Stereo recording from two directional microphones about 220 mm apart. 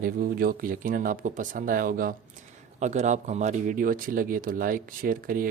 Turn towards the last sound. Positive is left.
turn(degrees=-40)  # may be behind; listen again after turning